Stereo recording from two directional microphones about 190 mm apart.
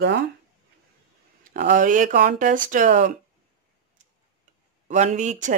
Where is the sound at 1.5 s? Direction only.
45° right (ahead or behind).